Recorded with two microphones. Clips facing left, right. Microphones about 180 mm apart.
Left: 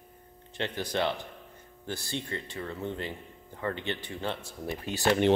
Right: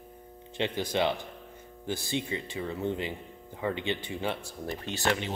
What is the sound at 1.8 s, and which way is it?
Speech, 10° right (ahead or behind).